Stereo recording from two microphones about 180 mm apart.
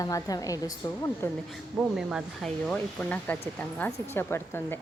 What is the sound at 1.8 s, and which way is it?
A woman's voice, 5° right (ahead or behind).